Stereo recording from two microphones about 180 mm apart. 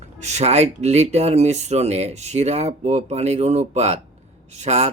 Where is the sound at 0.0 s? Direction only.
40° right (ahead or behind).